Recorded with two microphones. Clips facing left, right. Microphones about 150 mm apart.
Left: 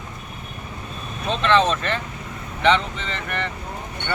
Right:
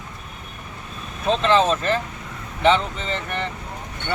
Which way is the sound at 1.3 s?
35° right (ahead or behind).